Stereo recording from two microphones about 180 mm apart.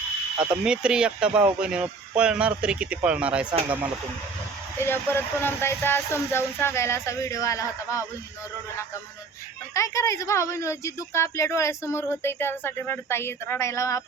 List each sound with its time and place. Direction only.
0.5 s speech: 5° right (ahead or behind)
4.8 s a woman's voice: 10° left (ahead or behind)
9.7 s a woman's voice: 15° left (ahead or behind)